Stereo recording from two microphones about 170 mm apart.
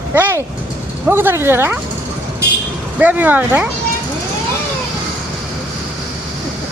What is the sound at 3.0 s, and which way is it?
Speech, 10° right (ahead or behind).